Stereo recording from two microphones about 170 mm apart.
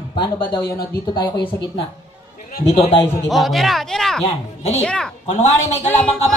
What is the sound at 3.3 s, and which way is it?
Speech, centre (ahead or behind).